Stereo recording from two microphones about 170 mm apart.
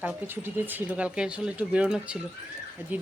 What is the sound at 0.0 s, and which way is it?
A woman's voice, 10° right (ahead or behind).